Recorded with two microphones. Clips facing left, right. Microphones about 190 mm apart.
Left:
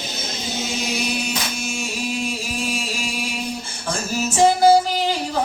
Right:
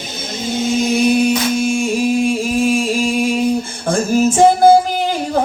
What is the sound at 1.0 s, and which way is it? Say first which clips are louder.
Music: right 12 dB; 50° right (ahead or behind).